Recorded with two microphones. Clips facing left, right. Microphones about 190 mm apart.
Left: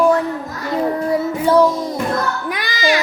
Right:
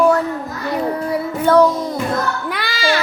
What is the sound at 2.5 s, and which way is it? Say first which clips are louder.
Music: left 3 dB; 15° left (ahead or behind).